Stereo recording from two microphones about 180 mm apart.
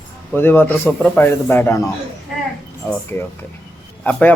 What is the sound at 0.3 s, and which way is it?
A man's voice, 10° left (ahead or behind).